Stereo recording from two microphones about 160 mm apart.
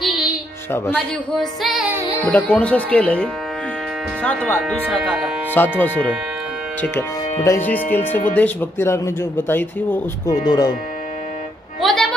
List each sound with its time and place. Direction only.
0.0 s music: centre (ahead or behind)
0.7 s speech: 15° left (ahead or behind)
1.3 s music: centre (ahead or behind)
2.2 s speech: 5° left (ahead or behind)
4.9 s music: 5° right (ahead or behind)
5.5 s speech: 10° left (ahead or behind)
7.4 s speech: 15° left (ahead or behind)
10.4 s speech: 25° left (ahead or behind)
11.8 s music: centre (ahead or behind)